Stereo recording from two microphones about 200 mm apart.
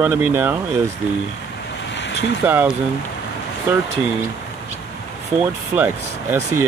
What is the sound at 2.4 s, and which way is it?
Speech, 10° right (ahead or behind).